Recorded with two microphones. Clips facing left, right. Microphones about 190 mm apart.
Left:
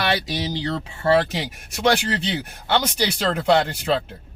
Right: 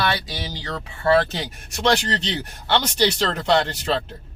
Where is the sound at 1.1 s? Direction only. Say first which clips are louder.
Even; 10° left (ahead or behind).